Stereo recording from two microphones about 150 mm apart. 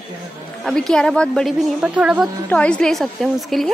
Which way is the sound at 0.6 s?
5° left (ahead or behind).